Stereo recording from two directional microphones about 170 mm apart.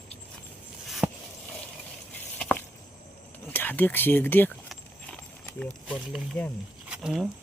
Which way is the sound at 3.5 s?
10° left (ahead or behind).